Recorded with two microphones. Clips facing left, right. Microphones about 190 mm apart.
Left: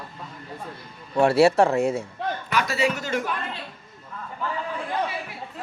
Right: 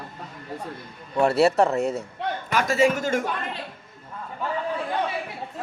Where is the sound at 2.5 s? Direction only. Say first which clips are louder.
Right 4 dB; 45° right (ahead or behind).